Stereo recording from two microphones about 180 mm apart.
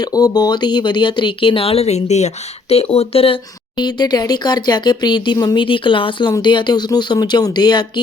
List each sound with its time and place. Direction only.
0.0 s speech: 20° left (ahead or behind)